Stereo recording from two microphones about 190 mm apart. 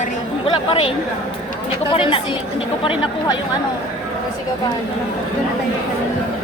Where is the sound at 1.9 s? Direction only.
30° left (ahead or behind).